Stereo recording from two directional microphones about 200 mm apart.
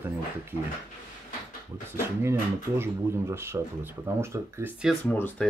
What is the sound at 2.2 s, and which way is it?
Speech, 15° right (ahead or behind).